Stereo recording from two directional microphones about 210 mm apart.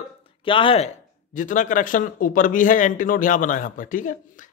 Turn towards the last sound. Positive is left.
turn(degrees=40)  # may be behind; listen again after turning